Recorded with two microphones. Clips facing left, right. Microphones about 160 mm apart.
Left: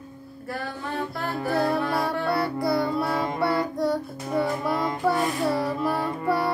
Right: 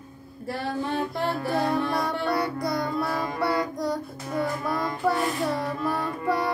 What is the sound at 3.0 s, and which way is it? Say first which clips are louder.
Music: left 2 dB; 25° left (ahead or behind).